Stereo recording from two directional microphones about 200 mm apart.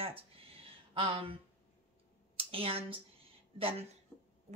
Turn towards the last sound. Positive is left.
turn(degrees=-30)  # may be behind; listen again after turning